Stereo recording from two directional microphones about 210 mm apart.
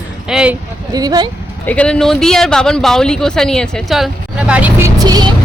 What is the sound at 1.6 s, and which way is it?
Speech, 5° left (ahead or behind).